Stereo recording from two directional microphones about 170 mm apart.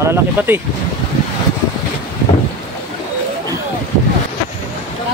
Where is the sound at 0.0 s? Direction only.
15° right (ahead or behind).